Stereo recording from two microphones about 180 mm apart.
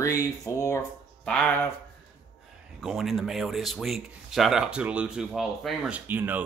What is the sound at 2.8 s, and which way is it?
Speech, centre (ahead or behind).